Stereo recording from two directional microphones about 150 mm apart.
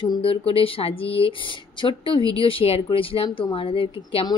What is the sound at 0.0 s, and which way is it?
A woman's voice, 35° left (ahead or behind).